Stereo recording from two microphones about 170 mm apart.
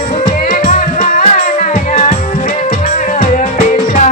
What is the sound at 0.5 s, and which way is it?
Music, 50° left (ahead or behind).